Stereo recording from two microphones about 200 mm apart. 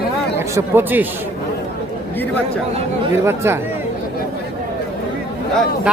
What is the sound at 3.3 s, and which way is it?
Speech, 10° right (ahead or behind).